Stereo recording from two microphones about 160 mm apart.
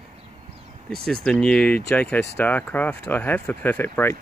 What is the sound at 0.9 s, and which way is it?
Speech, 5° left (ahead or behind).